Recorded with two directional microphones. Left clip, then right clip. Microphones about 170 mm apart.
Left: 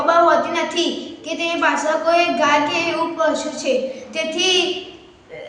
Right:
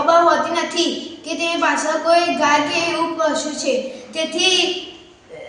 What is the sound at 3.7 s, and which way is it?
Speech, 40° left (ahead or behind).